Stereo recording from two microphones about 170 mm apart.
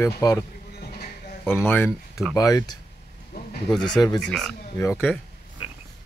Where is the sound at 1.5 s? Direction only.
10° left (ahead or behind).